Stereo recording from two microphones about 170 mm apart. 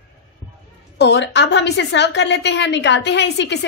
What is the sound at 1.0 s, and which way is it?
A woman's voice, 90° left.